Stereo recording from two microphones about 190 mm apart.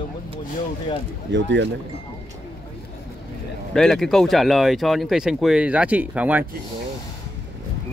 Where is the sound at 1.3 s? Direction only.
70° right (ahead or behind).